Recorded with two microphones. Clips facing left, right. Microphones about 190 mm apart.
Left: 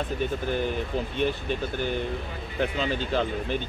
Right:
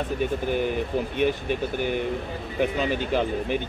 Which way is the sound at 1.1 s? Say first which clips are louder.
Right 3 dB; 15° right (ahead or behind).